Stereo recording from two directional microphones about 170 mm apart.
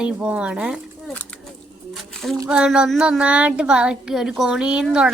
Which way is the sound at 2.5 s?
5° right (ahead or behind).